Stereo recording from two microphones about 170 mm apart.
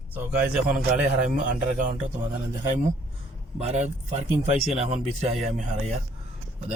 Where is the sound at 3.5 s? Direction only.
40° right (ahead or behind).